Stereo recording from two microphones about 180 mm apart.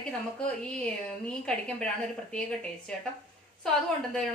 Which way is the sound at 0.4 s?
5° left (ahead or behind).